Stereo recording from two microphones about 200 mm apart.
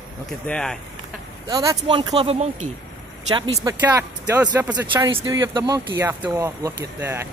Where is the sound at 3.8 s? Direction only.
10° right (ahead or behind).